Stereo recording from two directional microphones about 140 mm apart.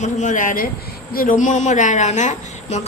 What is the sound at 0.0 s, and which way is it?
A woman's voice, 60° left (ahead or behind).